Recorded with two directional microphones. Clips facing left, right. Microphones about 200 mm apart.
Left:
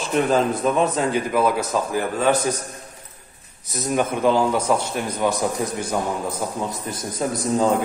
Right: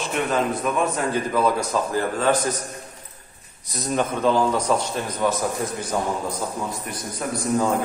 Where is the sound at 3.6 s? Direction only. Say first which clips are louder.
Left 2 dB; 5° left (ahead or behind).